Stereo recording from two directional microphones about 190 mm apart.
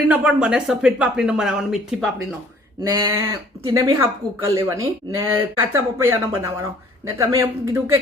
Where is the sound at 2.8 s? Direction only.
20° right (ahead or behind).